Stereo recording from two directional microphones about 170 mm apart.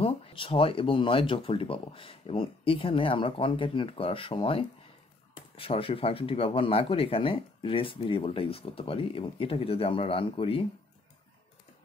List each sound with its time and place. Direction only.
0.0 s speech: 35° left (ahead or behind)